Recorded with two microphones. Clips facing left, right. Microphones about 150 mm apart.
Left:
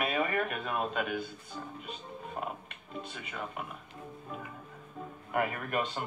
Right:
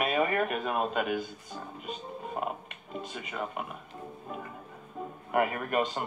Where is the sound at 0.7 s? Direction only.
5° right (ahead or behind).